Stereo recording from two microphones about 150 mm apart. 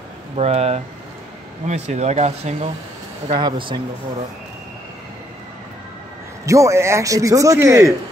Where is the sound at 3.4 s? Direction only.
30° right (ahead or behind).